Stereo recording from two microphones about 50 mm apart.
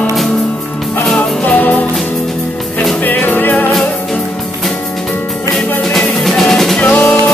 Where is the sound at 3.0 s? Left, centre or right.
Left.